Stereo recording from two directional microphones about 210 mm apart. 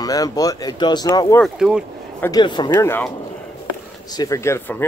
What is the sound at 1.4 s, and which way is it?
Speech, 5° right (ahead or behind).